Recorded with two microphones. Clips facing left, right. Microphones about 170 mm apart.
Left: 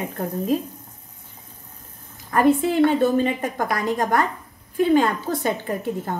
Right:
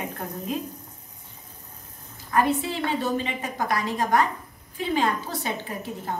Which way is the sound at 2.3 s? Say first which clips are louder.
Left 6 dB; 50° left (ahead or behind).